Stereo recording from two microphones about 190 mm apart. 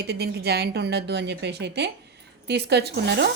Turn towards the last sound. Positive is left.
turn(degrees=-60)  # may be behind; listen again after turning